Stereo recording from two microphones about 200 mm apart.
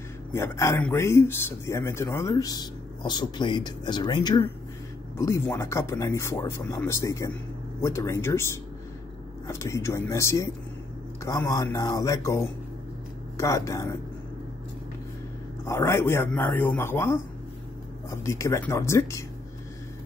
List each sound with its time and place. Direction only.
0.3 s a man's voice: 15° left (ahead or behind)
9.5 s a man's voice: 15° left (ahead or behind)
15.6 s a man's voice: 15° left (ahead or behind)